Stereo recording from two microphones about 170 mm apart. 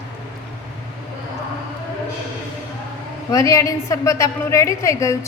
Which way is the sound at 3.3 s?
20° left (ahead or behind).